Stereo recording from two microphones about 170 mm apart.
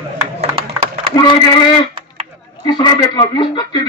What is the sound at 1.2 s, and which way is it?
Speech, 25° left (ahead or behind).